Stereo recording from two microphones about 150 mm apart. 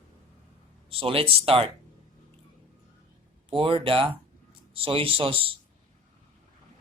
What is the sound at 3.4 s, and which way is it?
Speech, 35° right (ahead or behind).